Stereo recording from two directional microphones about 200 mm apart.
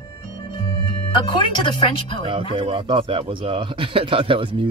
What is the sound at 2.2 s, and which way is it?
A man's voice, 25° right (ahead or behind).